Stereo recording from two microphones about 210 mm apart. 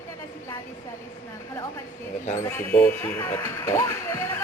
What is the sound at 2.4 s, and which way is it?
Speech, 10° left (ahead or behind).